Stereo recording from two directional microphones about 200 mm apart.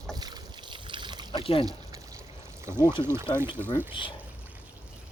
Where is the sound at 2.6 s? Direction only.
10° right (ahead or behind).